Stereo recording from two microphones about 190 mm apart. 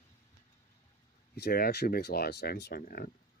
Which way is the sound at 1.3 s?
55° left (ahead or behind).